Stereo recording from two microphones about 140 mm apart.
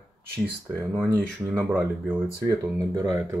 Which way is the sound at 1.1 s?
15° right (ahead or behind).